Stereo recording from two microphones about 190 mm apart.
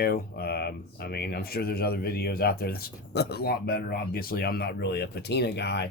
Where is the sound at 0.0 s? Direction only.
55° left (ahead or behind).